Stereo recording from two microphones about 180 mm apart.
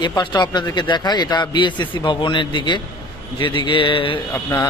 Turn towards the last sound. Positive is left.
turn(degrees=15)  # may be behind; listen again after turning